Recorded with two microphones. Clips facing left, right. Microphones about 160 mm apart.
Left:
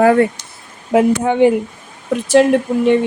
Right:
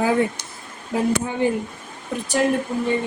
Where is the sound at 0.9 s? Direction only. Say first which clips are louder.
Left 9 dB; 75° left (ahead or behind).